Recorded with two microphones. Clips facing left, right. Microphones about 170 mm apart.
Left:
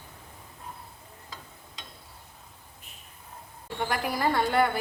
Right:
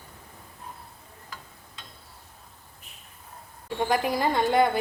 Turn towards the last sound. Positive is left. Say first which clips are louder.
# right 2 dB
turn(degrees=-15)  # may be behind; listen again after turning